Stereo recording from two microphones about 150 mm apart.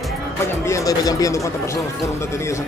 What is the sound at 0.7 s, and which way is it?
Speech, 20° left (ahead or behind).